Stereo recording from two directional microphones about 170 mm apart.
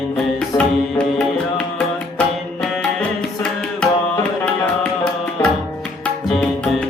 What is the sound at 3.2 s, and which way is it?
Tabla, 5° left (ahead or behind).